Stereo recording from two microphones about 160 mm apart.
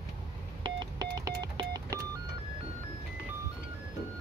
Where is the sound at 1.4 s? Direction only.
25° right (ahead or behind).